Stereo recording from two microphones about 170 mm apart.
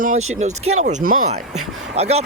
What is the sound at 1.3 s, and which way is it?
Speech, 40° right (ahead or behind).